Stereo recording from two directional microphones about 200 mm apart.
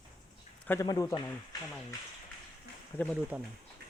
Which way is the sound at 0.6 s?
10° left (ahead or behind).